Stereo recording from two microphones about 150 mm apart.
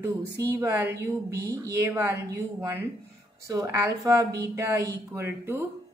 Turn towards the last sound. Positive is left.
turn(degrees=-15)  # may be behind; listen again after turning